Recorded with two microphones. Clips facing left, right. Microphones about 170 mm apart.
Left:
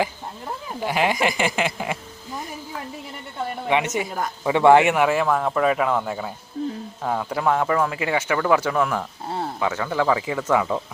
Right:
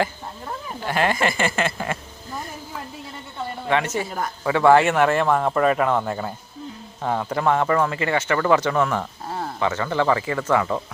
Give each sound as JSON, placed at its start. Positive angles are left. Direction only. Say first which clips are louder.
{"t": 0.8, "sound": "speech", "louder": "even", "side_deg": 10}
{"t": 3.7, "sound": "speech", "louder": "even", "side_deg": 15}